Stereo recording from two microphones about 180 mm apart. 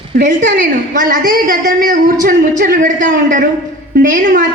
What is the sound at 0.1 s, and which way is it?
A woman's voice, 50° right (ahead or behind).